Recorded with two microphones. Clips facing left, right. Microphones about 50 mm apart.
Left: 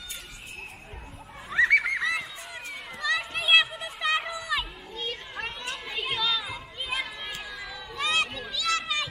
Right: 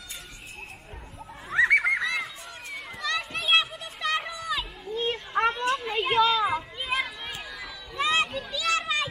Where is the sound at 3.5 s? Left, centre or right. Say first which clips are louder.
Left 3 dB; centre.